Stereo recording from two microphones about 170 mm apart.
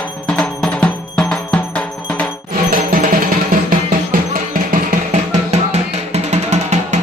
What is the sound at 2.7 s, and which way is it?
Music, 55° right (ahead or behind).